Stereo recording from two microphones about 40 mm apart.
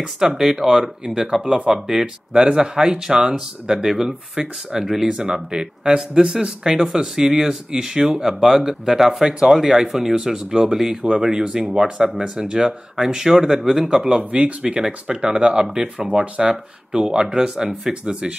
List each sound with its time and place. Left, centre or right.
0.2 s speech: centre